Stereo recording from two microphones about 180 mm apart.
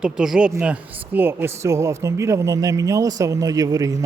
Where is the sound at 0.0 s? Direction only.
5° right (ahead or behind).